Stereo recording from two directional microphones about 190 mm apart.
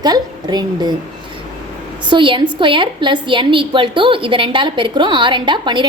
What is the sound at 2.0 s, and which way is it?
A woman's voice, 25° right (ahead or behind).